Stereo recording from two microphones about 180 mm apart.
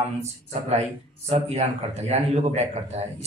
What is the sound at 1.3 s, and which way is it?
A man's voice, 35° right (ahead or behind).